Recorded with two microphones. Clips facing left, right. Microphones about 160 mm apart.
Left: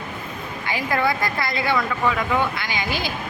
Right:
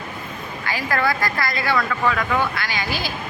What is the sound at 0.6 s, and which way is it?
Speech, 20° left (ahead or behind).